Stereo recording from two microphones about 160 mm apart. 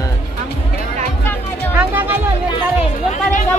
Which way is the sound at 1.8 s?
10° right (ahead or behind).